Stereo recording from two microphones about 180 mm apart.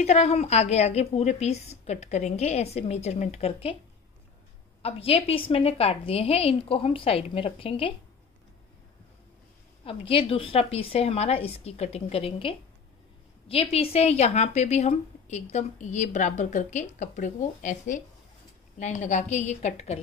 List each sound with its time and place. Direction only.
0.0 s speech: 35° left (ahead or behind)
4.8 s speech: 30° left (ahead or behind)
9.8 s speech: 30° left (ahead or behind)